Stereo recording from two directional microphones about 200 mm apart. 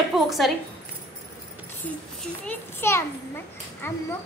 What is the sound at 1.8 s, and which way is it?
A child's voice, 10° left (ahead or behind).